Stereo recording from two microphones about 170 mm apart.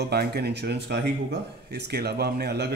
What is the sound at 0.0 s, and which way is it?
Speech, 70° right (ahead or behind).